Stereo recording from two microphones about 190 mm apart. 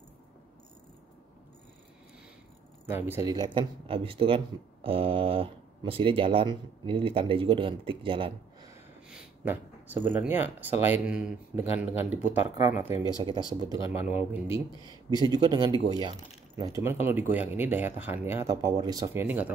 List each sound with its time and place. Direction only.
2.9 s speech: 10° right (ahead or behind); by 8.3 s 30° right (ahead or behind)
9.5 s speech: 10° right (ahead or behind)
13.2 s speech: 25° right (ahead or behind)
14.0 s speech: 10° right (ahead or behind)
14.9 s speech: 20° right (ahead or behind)